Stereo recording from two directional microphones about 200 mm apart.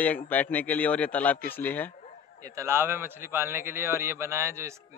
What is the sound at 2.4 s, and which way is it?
A man's voice, 15° right (ahead or behind).